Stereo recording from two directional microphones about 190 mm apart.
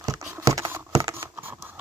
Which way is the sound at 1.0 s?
20° right (ahead or behind).